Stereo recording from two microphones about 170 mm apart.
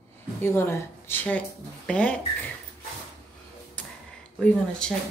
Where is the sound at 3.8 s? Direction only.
10° left (ahead or behind).